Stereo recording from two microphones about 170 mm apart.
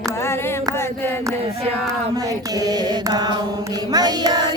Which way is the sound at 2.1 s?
20° right (ahead or behind).